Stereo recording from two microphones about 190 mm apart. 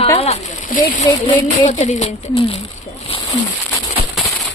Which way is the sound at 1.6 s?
40° left (ahead or behind).